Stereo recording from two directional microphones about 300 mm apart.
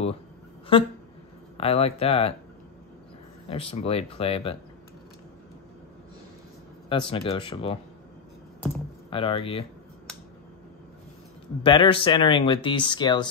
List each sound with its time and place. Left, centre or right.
0.7 s speech: centre
3.4 s speech: centre
6.9 s speech: centre
9.1 s speech: centre
11.6 s speech: centre